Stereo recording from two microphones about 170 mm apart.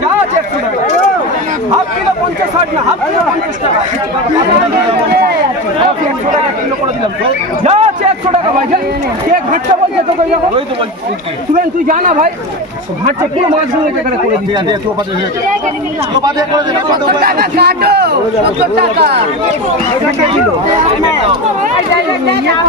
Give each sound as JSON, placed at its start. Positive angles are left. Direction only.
{"t": 7.6, "sound": "a sound", "side_deg": -40}
{"t": 11.5, "sound": "a man's voice", "side_deg": -50}
{"t": 16.2, "sound": "speech", "side_deg": -20}
{"t": 17.2, "sound": "speech", "side_deg": -65}